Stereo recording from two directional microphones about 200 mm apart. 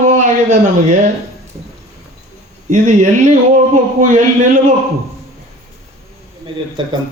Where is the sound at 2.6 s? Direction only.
35° right (ahead or behind).